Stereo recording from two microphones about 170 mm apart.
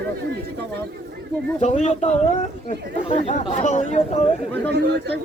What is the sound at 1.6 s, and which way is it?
Speech, 40° left (ahead or behind).